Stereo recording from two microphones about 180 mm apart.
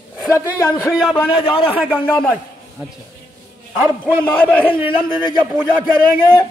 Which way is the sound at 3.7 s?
10° right (ahead or behind).